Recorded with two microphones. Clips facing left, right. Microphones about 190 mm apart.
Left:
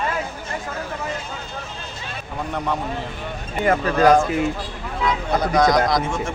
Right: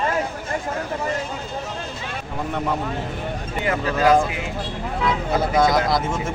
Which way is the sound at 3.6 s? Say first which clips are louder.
Left 3 dB; 45° left (ahead or behind).